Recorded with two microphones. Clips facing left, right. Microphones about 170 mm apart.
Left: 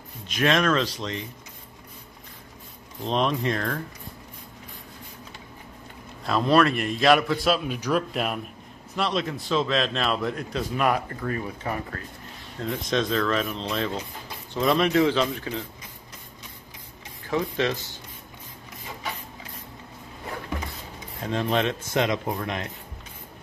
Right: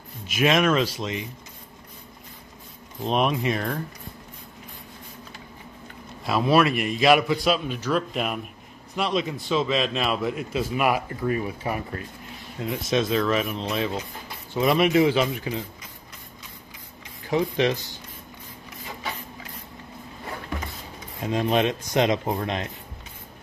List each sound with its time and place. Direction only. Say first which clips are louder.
0.3 s speech: right 2 dB; 10° right (ahead or behind)
3.1 s speech: right 1 dB; 10° right (ahead or behind)
6.2 s a man's voice: even; 5° right (ahead or behind)
17.3 s speech: right 3 dB; 15° right (ahead or behind)
21.2 s speech: right 2 dB; 15° right (ahead or behind)